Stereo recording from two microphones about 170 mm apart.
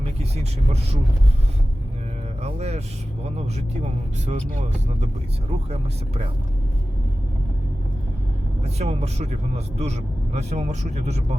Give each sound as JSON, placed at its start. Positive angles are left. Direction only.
{"t": 2.4, "sound": "speech", "side_deg": -40}
{"t": 8.8, "sound": "speech", "side_deg": -40}